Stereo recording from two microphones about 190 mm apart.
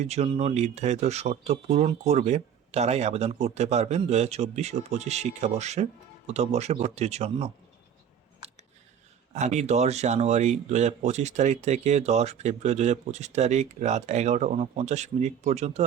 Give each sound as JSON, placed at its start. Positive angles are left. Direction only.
{"t": 0.0, "sound": "speech", "side_deg": -35}
{"t": 8.4, "sound": "a sound", "side_deg": -35}
{"t": 9.3, "sound": "speech", "side_deg": -35}